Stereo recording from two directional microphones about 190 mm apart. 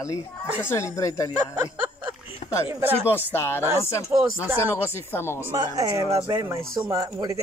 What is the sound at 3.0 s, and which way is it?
Speech, 10° left (ahead or behind).